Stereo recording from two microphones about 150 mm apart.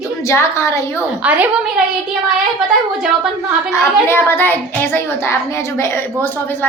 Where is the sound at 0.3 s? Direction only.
20° left (ahead or behind).